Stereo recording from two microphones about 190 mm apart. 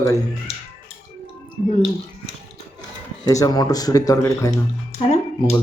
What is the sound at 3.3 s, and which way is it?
Speech, 20° left (ahead or behind).